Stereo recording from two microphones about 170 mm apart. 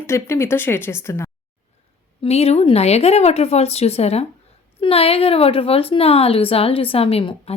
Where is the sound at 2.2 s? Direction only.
35° left (ahead or behind).